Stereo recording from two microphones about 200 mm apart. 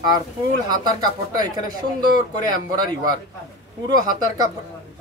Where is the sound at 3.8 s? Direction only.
20° right (ahead or behind).